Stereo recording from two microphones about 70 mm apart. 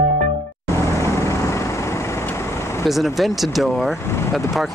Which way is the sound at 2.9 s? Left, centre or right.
Centre.